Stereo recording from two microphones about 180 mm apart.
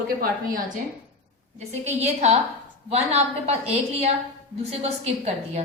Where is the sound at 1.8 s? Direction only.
40° right (ahead or behind).